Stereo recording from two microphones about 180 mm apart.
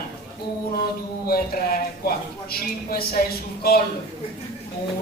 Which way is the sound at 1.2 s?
55° left (ahead or behind).